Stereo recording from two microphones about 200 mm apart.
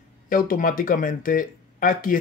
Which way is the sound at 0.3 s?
45° left (ahead or behind).